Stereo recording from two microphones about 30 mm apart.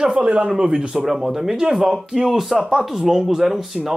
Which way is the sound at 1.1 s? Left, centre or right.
Centre.